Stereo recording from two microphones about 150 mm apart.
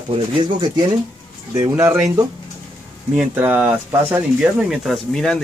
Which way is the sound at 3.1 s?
10° right (ahead or behind).